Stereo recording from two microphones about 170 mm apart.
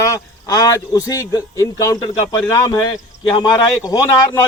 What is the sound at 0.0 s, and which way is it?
Speech, 20° left (ahead or behind).